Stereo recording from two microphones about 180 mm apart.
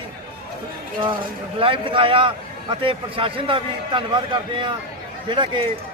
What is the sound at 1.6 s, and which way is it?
A man's voice, 30° right (ahead or behind).